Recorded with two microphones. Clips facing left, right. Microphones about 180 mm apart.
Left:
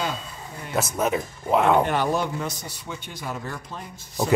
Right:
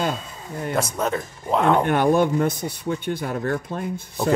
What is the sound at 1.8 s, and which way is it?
Speech, 55° right (ahead or behind).